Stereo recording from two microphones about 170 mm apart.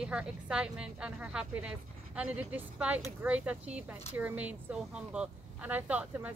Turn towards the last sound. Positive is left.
turn(degrees=-10)  # may be behind; listen again after turning